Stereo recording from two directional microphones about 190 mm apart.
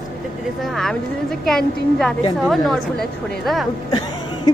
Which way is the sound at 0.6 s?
Centre (ahead or behind).